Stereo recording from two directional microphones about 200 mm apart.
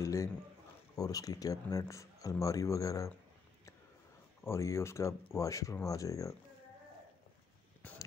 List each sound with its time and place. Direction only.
0.0 s speech: 15° left (ahead or behind)
4.5 s speech: 15° left (ahead or behind)
7.8 s a sound: 5° left (ahead or behind)